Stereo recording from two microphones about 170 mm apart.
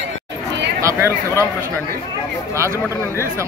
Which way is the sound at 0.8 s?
15° right (ahead or behind).